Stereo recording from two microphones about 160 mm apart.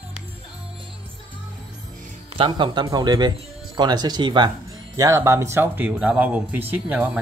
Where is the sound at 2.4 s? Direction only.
30° right (ahead or behind).